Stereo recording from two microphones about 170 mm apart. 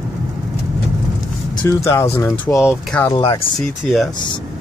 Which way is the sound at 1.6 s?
15° left (ahead or behind).